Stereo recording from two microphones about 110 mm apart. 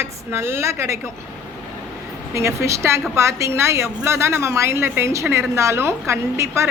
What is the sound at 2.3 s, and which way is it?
A woman's voice, 25° right (ahead or behind).